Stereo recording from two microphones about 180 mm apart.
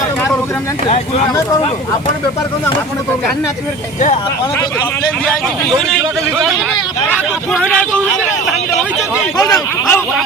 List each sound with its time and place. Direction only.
0.9 s speech: 35° left (ahead or behind)
7.1 s speech: centre (ahead or behind)
9.4 s speech: 15° left (ahead or behind)